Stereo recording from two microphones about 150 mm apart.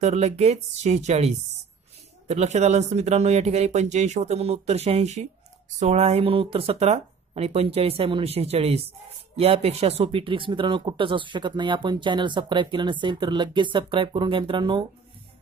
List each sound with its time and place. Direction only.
0.0 s speech: 45° right (ahead or behind)